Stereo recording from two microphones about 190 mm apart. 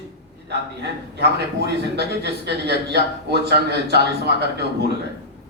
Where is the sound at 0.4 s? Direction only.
60° right (ahead or behind).